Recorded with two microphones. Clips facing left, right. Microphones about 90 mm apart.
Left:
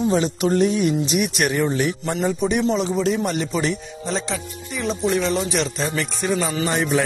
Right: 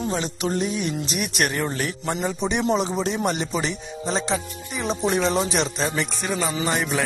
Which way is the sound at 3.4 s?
15° right (ahead or behind).